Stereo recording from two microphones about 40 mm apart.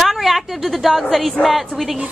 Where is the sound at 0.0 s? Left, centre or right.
Centre.